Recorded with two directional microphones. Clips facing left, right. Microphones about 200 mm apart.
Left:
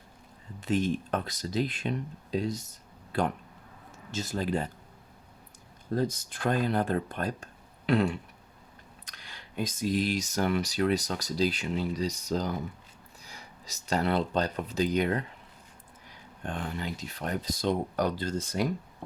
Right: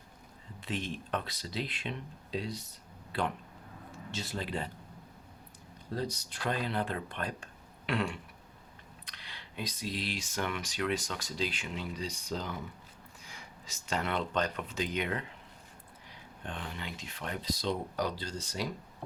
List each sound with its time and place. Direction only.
0.6 s speech: 45° left (ahead or behind)
5.9 s speech: 50° left (ahead or behind)
16.4 s speech: 45° left (ahead or behind)